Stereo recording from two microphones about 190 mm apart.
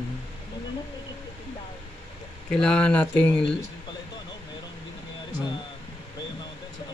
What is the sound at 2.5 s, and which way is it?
Speech, 5° left (ahead or behind).